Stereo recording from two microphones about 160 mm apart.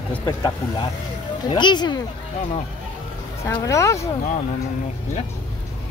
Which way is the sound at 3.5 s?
20° left (ahead or behind).